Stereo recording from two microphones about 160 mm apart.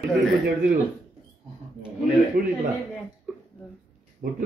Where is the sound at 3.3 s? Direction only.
5° right (ahead or behind).